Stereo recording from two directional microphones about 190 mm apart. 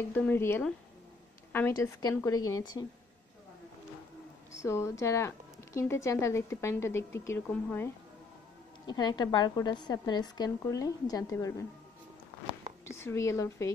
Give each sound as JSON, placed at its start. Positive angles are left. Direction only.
{"t": 0.1, "sound": "a woman's voice", "side_deg": 10}
{"t": 4.6, "sound": "speech", "side_deg": 15}
{"t": 8.8, "sound": "a woman's voice", "side_deg": 20}
{"t": 12.9, "sound": "speech", "side_deg": 15}